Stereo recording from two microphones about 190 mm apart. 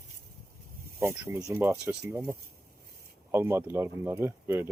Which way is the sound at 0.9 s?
10° right (ahead or behind).